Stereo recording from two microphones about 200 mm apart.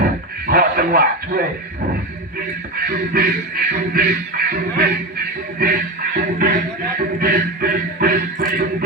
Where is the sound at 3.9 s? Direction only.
50° right (ahead or behind).